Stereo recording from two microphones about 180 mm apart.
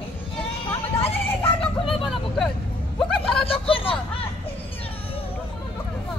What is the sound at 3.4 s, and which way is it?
Vehicle, 30° left (ahead or behind).